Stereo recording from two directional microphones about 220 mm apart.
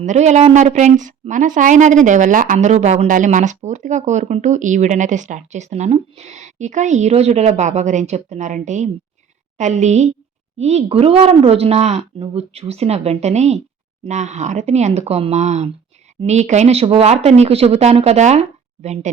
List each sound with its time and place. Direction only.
0.0 s a woman's voice: 30° right (ahead or behind)